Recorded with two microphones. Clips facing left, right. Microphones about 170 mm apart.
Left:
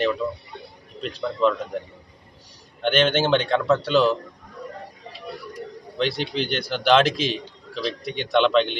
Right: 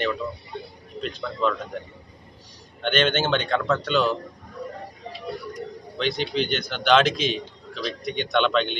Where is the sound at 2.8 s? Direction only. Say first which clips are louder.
Left 2 dB; 5° left (ahead or behind).